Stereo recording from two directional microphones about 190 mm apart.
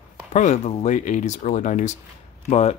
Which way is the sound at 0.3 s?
40° left (ahead or behind).